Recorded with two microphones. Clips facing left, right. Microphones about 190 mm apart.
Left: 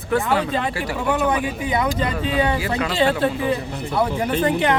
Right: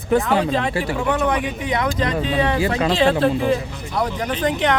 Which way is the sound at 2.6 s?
25° right (ahead or behind).